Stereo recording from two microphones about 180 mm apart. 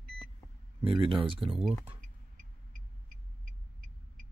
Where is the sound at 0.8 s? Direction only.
30° right (ahead or behind).